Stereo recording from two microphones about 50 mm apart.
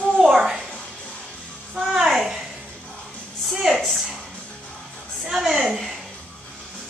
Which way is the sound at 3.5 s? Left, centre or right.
Centre.